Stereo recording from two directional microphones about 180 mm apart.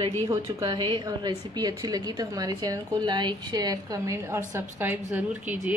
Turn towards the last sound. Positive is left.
turn(degrees=-10)  # may be behind; listen again after turning